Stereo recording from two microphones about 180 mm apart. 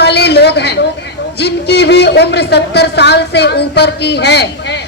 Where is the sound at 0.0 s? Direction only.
65° left (ahead or behind).